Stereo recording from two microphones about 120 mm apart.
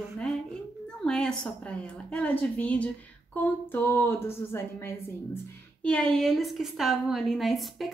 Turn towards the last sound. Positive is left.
turn(degrees=0)  # may be behind; listen again after turning